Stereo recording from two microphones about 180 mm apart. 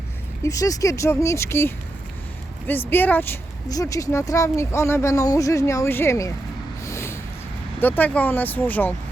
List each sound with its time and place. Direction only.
0.4 s speech: 20° left (ahead or behind)
6.8 s a sound: 15° left (ahead or behind)
7.8 s speech: 10° left (ahead or behind)